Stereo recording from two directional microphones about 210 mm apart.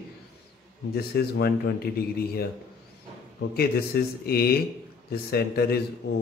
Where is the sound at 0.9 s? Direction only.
50° left (ahead or behind).